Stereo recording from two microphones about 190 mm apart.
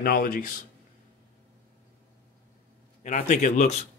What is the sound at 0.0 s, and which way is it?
Speech, 50° left (ahead or behind).